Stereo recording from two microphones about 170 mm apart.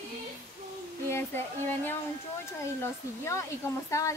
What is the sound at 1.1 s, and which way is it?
A woman's voice, 10° left (ahead or behind).